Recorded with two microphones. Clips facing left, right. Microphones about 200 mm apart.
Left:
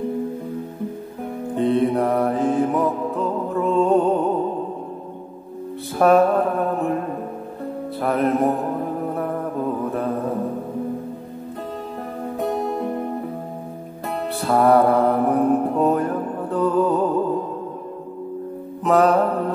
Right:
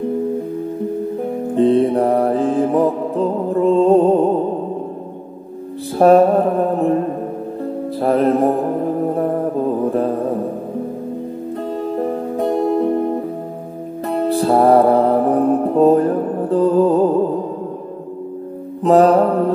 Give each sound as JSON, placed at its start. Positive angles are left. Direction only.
{"t": 1.6, "sound": "mantra", "side_deg": -30}
{"t": 5.9, "sound": "mantra", "side_deg": -30}
{"t": 8.0, "sound": "mantra", "side_deg": -30}
{"t": 14.0, "sound": "music", "side_deg": -35}
{"t": 18.8, "sound": "mantra", "side_deg": -30}